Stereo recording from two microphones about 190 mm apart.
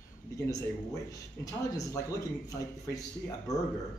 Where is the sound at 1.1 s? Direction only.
15° left (ahead or behind).